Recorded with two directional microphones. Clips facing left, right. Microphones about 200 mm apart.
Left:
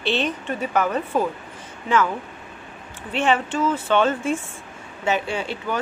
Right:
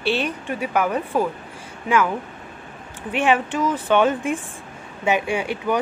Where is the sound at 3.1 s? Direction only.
15° right (ahead or behind).